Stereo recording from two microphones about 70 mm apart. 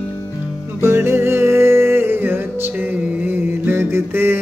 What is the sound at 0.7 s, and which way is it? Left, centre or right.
Music, right.